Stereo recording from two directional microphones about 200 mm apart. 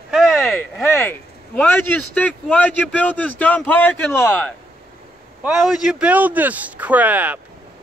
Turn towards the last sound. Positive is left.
turn(degrees=-10)  # may be behind; listen again after turning